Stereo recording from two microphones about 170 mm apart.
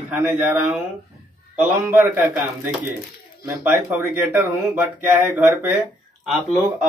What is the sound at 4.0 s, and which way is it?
Speech, 10° right (ahead or behind).